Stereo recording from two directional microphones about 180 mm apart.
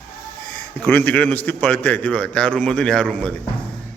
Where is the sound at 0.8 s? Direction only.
10° left (ahead or behind).